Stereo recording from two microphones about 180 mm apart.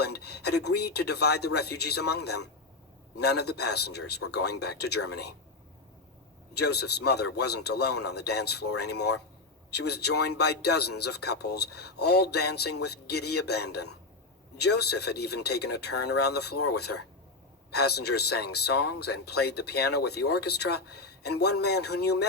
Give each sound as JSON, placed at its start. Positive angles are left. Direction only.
{"t": 0.0, "sound": "speech", "side_deg": 65}
{"t": 6.6, "sound": "speech", "side_deg": 65}